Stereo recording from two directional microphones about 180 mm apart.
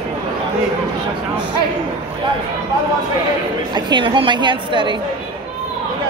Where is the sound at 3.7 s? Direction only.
25° right (ahead or behind).